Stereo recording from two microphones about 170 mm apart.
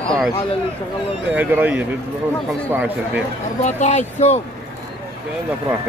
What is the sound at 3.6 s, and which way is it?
Speech, 45° left (ahead or behind).